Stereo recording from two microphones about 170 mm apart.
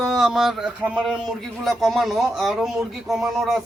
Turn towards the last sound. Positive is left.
turn(degrees=0)  # may be behind; listen again after turning